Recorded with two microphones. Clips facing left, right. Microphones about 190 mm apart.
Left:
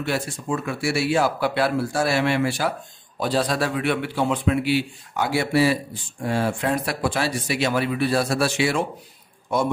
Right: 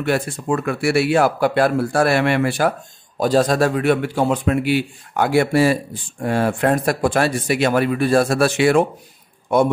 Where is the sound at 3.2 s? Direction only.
45° right (ahead or behind).